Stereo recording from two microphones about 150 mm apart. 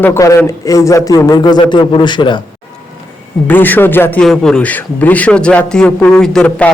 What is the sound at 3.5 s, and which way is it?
A man's voice, 10° left (ahead or behind).